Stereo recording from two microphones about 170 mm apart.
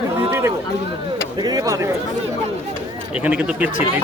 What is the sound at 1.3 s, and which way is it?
Speech, 25° right (ahead or behind).